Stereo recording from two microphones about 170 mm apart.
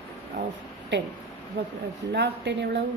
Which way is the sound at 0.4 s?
90° right.